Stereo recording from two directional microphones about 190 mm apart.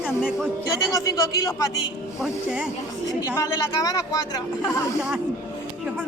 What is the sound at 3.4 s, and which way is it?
Speech, 20° left (ahead or behind).